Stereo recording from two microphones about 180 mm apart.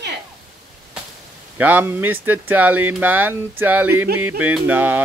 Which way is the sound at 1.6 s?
10° right (ahead or behind).